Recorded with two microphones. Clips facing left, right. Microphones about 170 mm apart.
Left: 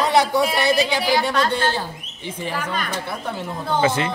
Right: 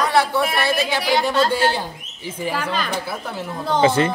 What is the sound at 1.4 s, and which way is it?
Speech, 10° right (ahead or behind).